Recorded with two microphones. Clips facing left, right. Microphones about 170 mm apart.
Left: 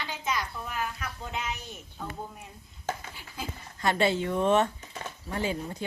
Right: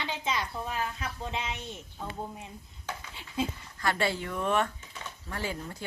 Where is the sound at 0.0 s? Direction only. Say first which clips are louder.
Even; 25° right (ahead or behind).